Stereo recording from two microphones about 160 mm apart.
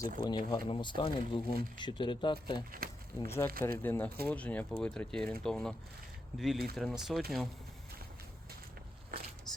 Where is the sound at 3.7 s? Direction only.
10° left (ahead or behind).